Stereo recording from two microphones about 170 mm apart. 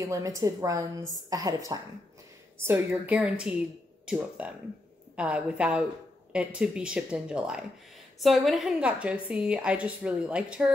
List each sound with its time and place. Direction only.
0.0 s a woman's voice: 20° right (ahead or behind)